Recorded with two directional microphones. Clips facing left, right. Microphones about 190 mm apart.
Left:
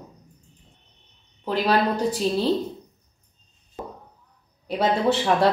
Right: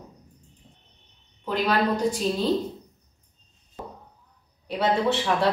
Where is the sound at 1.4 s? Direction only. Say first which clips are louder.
Left 2 dB; 30° left (ahead or behind).